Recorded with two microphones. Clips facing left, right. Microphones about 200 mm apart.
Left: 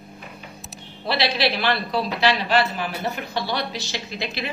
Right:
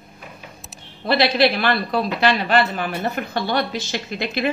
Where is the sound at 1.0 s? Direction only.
50° right (ahead or behind).